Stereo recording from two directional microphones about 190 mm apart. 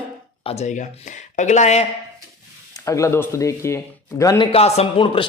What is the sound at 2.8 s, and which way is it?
A man's voice, 15° left (ahead or behind).